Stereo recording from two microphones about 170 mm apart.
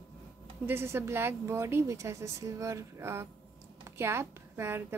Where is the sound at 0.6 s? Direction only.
15° right (ahead or behind).